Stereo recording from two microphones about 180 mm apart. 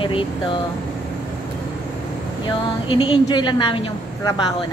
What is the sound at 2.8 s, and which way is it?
Speech, 25° left (ahead or behind).